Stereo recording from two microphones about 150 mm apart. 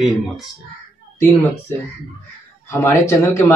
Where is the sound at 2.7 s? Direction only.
15° left (ahead or behind).